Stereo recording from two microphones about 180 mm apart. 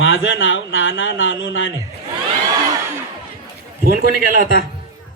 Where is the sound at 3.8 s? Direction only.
55° right (ahead or behind).